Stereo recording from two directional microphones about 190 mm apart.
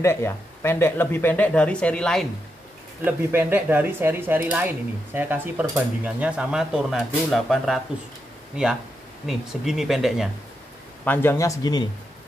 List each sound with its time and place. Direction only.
0.0 s speech: 15° left (ahead or behind)
3.0 s speech: 10° right (ahead or behind)
9.2 s speech: centre (ahead or behind)
11.1 s speech: 15° left (ahead or behind)